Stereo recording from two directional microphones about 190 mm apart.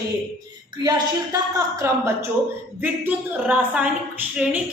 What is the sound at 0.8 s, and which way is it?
A woman's voice, 20° right (ahead or behind).